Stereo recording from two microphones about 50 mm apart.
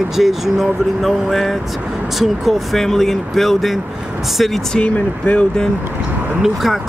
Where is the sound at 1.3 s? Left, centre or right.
Centre.